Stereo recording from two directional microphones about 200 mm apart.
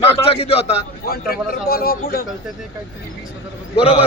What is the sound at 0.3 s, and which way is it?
Speech, 30° left (ahead or behind).